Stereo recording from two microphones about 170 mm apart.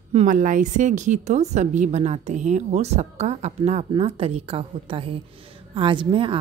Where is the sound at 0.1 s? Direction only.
45° right (ahead or behind).